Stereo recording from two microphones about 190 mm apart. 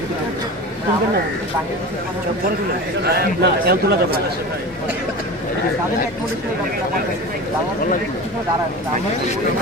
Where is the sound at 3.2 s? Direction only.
55° right (ahead or behind).